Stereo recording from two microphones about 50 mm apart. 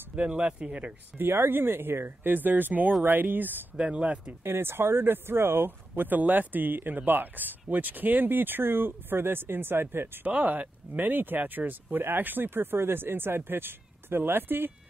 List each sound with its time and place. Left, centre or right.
0.1 s speech: right
1.1 s speech: right
3.7 s speech: centre
4.4 s speech: right
10.2 s speech: right